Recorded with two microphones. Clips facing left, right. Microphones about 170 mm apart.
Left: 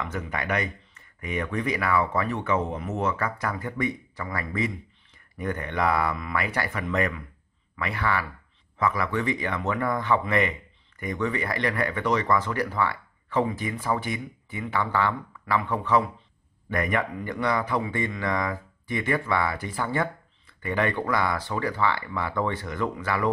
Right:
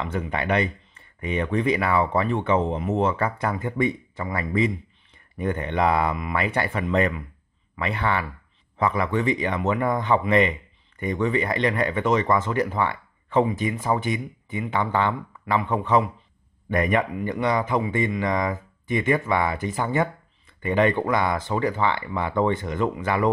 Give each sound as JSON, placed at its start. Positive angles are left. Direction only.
{"t": 0.0, "sound": "speech", "side_deg": -25}